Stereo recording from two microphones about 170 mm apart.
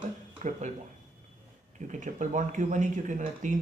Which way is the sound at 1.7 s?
45° right (ahead or behind).